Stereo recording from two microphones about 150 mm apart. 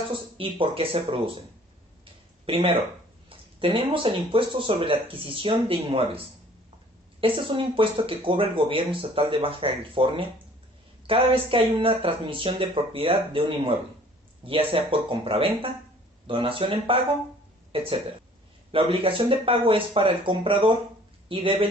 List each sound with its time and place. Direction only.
0.4 s speech: 40° right (ahead or behind)
2.4 s speech: 40° right (ahead or behind)